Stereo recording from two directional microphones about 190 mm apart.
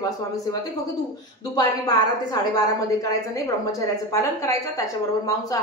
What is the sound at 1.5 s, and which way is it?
A woman's voice, 20° left (ahead or behind).